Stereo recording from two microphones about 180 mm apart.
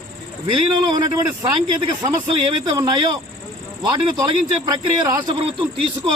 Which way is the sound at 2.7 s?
20° right (ahead or behind).